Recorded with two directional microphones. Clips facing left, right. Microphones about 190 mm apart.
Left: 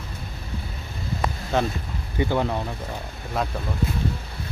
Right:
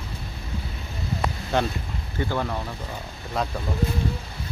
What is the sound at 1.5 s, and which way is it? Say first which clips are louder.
Speech: left 1 dB; centre (ahead or behind).